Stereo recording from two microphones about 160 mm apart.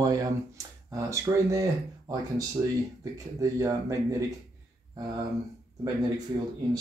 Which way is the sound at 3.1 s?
20° right (ahead or behind).